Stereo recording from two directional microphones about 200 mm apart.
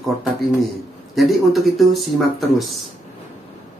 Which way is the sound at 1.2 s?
Centre (ahead or behind).